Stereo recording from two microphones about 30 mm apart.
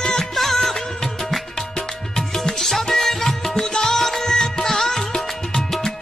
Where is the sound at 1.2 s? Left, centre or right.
Centre.